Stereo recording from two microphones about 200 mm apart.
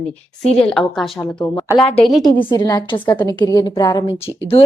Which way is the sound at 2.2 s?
20° left (ahead or behind).